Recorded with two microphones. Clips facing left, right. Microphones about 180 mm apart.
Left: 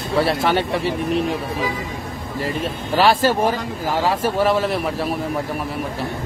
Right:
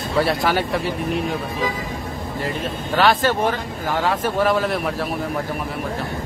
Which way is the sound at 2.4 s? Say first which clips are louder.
Left 2 dB; 5° left (ahead or behind).